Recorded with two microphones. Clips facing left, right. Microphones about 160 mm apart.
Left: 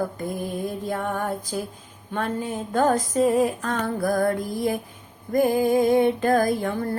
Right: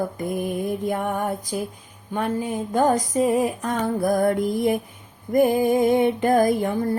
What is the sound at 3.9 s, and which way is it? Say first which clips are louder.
Music: right 3 dB; 20° right (ahead or behind).